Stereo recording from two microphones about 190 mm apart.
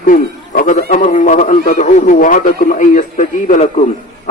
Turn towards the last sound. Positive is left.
turn(degrees=35)  # may be behind; listen again after turning